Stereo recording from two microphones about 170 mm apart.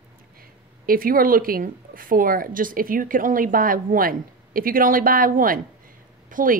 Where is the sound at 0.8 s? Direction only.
55° right (ahead or behind).